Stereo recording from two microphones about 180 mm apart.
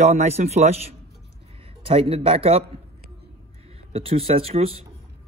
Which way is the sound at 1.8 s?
30° right (ahead or behind).